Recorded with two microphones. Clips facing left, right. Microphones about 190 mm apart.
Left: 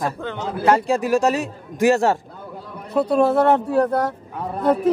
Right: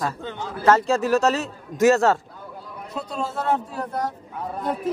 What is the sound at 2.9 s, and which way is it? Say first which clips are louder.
A woman's voice: left 13 dB; 60° left (ahead or behind).